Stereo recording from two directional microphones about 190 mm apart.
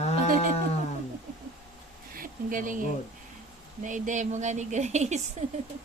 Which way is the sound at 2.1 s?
45° right (ahead or behind).